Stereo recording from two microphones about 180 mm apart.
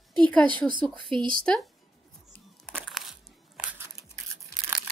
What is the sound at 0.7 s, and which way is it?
Speech, 25° right (ahead or behind).